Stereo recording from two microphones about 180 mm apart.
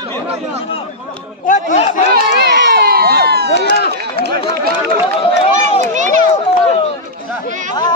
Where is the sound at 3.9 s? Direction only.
60° right (ahead or behind).